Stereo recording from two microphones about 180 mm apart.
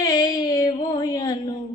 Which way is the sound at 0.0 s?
20° left (ahead or behind).